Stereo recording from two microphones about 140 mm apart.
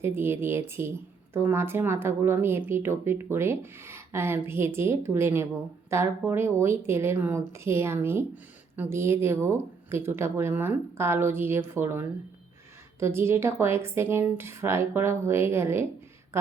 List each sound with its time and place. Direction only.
0.0 s a woman's voice: 15° right (ahead or behind)